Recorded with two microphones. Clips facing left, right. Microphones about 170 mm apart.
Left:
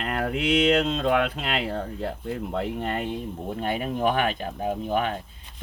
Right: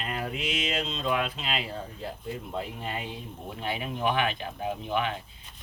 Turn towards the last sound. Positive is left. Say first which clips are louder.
# left 4 dB
turn(degrees=45)  # may be behind; listen again after turning